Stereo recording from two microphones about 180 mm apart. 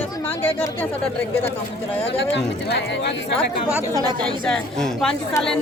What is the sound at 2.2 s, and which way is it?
Speech, 75° left (ahead or behind).